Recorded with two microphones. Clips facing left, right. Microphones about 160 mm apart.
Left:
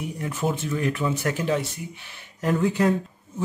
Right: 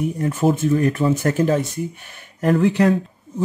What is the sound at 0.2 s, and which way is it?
Speech, 45° right (ahead or behind).